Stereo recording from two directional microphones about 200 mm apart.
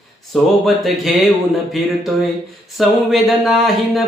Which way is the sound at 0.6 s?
Centre (ahead or behind).